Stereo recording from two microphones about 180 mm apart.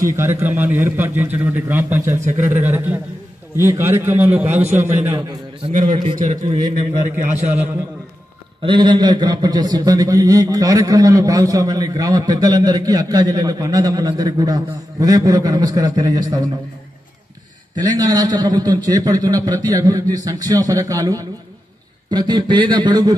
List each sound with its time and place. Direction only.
0.1 s a man's voice: 15° right (ahead or behind)
5.7 s a man's voice: 45° right (ahead or behind)
7.5 s a man's voice: 10° right (ahead or behind)
8.6 s a man's voice: 25° right (ahead or behind)
17.7 s a man's voice: 20° right (ahead or behind)